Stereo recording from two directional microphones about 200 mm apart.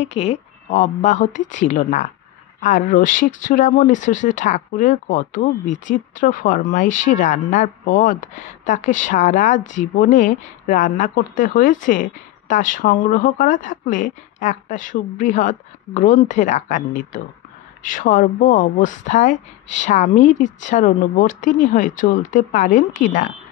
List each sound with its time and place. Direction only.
0.0 s speech: 30° left (ahead or behind)